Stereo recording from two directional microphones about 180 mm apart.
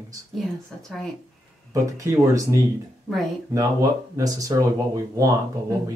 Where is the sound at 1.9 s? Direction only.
15° right (ahead or behind).